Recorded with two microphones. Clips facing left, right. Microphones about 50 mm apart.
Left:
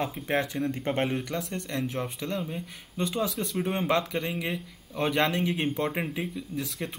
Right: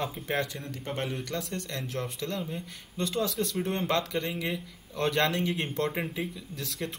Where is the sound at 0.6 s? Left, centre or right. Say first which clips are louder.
Left 6 dB; left.